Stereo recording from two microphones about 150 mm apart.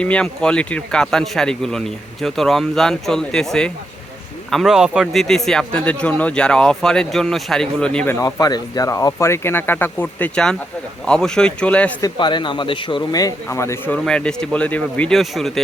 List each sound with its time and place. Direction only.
0.0 s speech: 5° left (ahead or behind)
8.1 s speech: 25° left (ahead or behind); by 11.9 s 10° left (ahead or behind)
12.0 s a man's voice: 30° left (ahead or behind); by 14.0 s 15° left (ahead or behind)
14.0 s speech: 5° left (ahead or behind)